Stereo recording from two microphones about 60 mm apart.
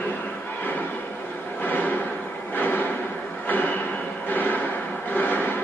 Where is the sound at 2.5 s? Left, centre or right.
Left.